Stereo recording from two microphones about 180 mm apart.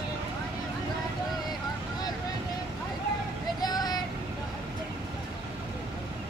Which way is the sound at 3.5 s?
20° left (ahead or behind).